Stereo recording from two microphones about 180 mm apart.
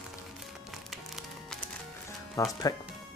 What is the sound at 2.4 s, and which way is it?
Speech, 20° left (ahead or behind).